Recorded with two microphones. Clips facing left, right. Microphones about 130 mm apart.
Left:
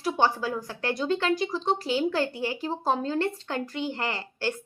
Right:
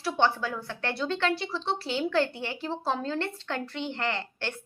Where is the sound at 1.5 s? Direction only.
45° left (ahead or behind).